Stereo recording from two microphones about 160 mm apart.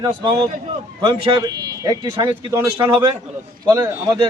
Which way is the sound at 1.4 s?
25° right (ahead or behind).